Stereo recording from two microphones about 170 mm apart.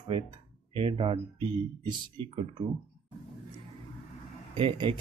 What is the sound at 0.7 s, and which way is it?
Speech, 30° right (ahead or behind).